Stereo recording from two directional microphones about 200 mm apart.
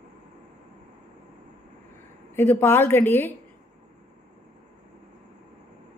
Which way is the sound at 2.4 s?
10° left (ahead or behind).